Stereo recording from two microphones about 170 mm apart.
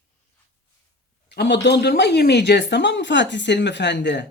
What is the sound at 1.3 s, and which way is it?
Speech, 90° left.